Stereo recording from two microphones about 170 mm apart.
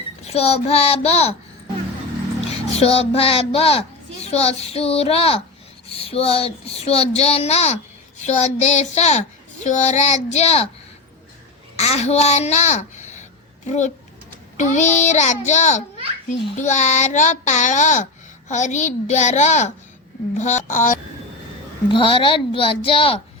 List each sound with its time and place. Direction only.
0.2 s a child's voice: 40° left (ahead or behind)
2.7 s a child's voice: 35° left (ahead or behind)
11.8 s a child's voice: 40° left (ahead or behind)
21.8 s a child's voice: 30° left (ahead or behind)